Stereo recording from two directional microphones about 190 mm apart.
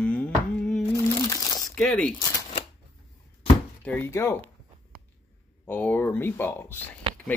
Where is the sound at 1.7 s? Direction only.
5° left (ahead or behind).